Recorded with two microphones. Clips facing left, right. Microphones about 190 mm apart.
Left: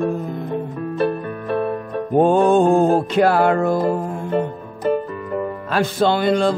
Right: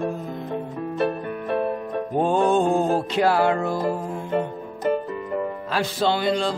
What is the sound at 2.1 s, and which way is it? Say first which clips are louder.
Music: left 6 dB; 55° left (ahead or behind).